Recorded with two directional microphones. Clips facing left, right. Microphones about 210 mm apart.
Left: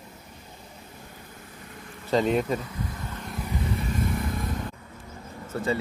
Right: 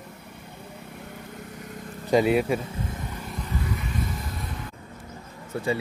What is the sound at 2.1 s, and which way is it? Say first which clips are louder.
Speech: right 3 dB; 10° right (ahead or behind).